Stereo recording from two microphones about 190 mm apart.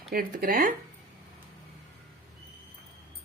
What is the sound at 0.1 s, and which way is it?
Speech, 50° right (ahead or behind).